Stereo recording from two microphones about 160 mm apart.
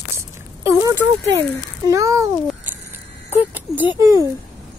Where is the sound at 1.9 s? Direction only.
20° right (ahead or behind).